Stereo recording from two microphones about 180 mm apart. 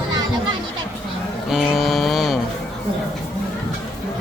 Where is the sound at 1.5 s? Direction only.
Centre (ahead or behind).